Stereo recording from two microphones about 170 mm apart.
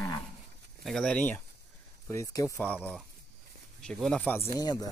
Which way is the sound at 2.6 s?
10° left (ahead or behind).